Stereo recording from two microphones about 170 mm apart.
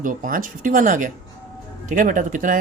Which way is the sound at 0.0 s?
50° right (ahead or behind).